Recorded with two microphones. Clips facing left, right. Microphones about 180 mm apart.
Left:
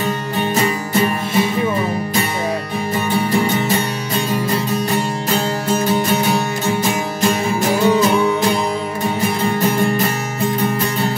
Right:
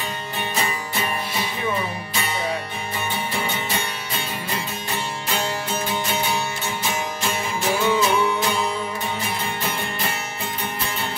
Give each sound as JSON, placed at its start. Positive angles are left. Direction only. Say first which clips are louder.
{"t": 3.1, "sound": "music", "louder": "left 11 dB", "side_deg": 40}
{"t": 7.2, "sound": "music", "louder": "left 9 dB", "side_deg": 40}
{"t": 9.6, "sound": "music", "louder": "left 12 dB", "side_deg": 40}